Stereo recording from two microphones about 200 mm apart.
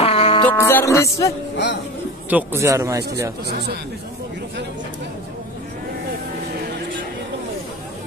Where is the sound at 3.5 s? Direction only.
55° right (ahead or behind).